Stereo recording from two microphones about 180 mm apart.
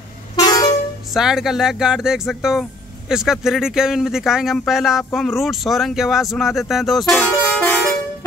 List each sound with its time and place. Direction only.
0.4 s vehicle horn: 25° left (ahead or behind)
1.1 s speech: centre (ahead or behind)